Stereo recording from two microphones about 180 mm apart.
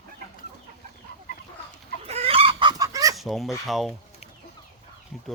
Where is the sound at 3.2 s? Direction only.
Centre (ahead or behind).